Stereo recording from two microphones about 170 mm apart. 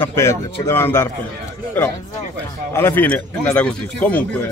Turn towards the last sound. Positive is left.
turn(degrees=10)  # may be behind; listen again after turning